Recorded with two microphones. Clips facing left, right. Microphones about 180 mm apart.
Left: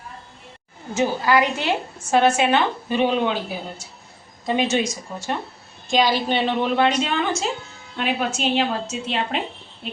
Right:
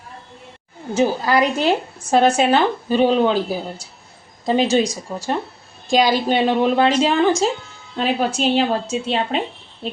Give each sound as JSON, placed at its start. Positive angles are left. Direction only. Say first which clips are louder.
{"t": 0.9, "sound": "speech", "louder": "right 2 dB", "side_deg": -35}
{"t": 6.0, "sound": "speech", "louder": "right 3 dB", "side_deg": -45}